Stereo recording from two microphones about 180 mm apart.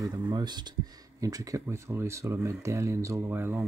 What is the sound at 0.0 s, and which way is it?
Speech, 25° right (ahead or behind).